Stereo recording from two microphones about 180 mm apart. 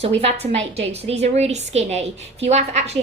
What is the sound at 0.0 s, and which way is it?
A woman's voice, 35° right (ahead or behind).